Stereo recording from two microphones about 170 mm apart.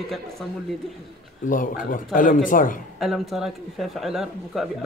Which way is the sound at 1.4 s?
50° left (ahead or behind).